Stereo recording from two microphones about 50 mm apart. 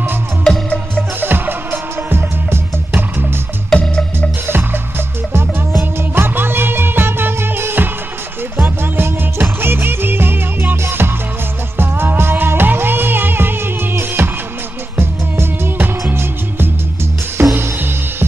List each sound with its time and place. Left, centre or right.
0.5 s music: centre
1.2 s music: right
3.7 s music: centre
5.8 s music: right